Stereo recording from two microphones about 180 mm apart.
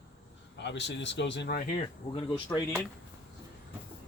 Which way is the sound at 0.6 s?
75° left (ahead or behind).